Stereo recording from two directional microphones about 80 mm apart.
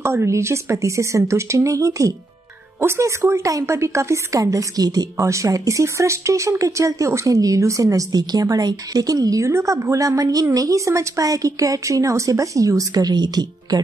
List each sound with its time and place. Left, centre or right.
0.0 s a woman's voice: right